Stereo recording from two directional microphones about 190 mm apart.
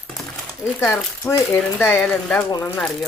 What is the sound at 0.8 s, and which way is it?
A woman's voice, 10° left (ahead or behind).